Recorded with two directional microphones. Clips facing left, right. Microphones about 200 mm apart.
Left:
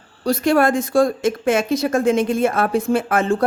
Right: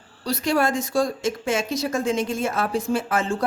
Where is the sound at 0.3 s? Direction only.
55° left (ahead or behind).